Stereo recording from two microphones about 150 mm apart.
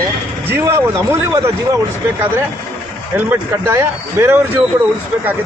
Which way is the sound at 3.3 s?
15° right (ahead or behind).